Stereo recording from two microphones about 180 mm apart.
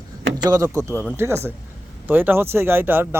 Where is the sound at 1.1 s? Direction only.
15° right (ahead or behind).